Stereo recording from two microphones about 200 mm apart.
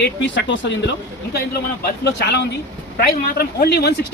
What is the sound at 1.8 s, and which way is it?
Speech, 60° left (ahead or behind).